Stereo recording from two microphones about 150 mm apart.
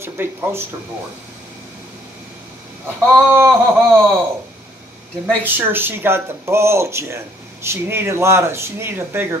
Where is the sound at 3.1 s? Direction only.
15° right (ahead or behind).